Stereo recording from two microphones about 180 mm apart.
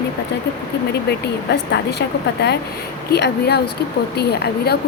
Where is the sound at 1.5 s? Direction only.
70° left (ahead or behind).